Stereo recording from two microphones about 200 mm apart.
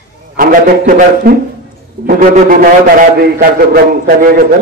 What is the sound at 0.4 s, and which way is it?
A man's voice, 45° right (ahead or behind).